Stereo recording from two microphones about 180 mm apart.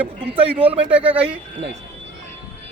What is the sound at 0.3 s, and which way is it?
Speech, 30° right (ahead or behind).